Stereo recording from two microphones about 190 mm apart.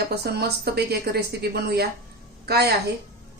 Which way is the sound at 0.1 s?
60° right (ahead or behind).